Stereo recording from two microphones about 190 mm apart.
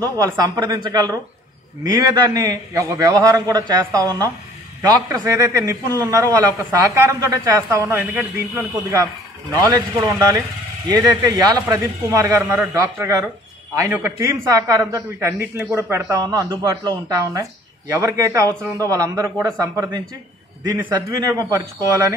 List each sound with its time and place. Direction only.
0.0 s a man's voice: 20° right (ahead or behind)